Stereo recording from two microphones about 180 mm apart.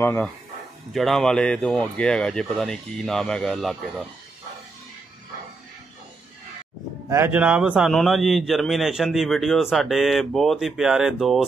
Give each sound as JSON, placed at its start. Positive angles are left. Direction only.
{"t": 0.0, "sound": "speech", "side_deg": 10}
{"t": 0.9, "sound": "a man's voice", "side_deg": 0}
{"t": 7.1, "sound": "a man's voice", "side_deg": -10}